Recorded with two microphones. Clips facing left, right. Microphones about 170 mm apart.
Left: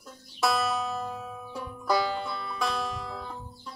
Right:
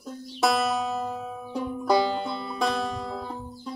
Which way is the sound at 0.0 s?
20° right (ahead or behind).